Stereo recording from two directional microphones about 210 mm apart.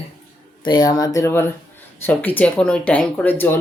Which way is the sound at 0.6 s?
20° left (ahead or behind).